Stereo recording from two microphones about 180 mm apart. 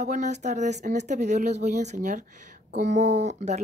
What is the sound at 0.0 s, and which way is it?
Speech, 40° right (ahead or behind).